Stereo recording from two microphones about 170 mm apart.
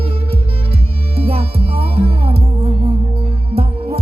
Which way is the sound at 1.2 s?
35° right (ahead or behind).